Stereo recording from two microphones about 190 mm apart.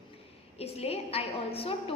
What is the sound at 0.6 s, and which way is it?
A woman's voice, 30° left (ahead or behind).